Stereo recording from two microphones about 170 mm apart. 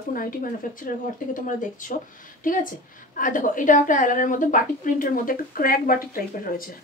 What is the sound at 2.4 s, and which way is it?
A woman's voice, 55° left (ahead or behind).